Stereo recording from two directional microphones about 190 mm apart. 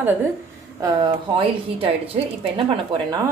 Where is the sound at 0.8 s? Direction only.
25° right (ahead or behind).